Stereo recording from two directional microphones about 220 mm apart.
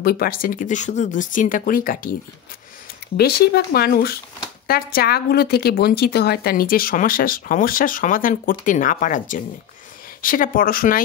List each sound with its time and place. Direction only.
0.0 s a woman's voice: 45° left (ahead or behind)
3.2 s a woman's voice: 45° left (ahead or behind)